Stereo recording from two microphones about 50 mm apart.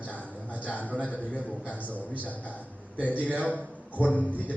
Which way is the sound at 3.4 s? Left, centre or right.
Left.